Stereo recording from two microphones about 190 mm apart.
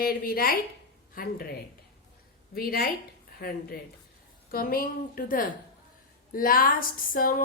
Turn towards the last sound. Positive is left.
turn(degrees=50)  # may be behind; listen again after turning